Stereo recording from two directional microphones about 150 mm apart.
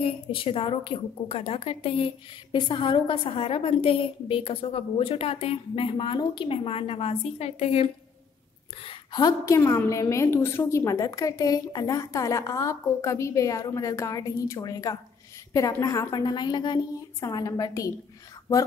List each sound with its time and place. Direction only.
0.0 s a woman's voice: 35° left (ahead or behind)
8.8 s a woman's voice: 30° left (ahead or behind)
9.6 s a woman's voice: 20° left (ahead or behind)